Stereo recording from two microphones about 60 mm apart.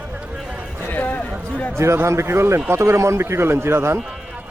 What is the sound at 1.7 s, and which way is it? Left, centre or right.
A man's voice, right.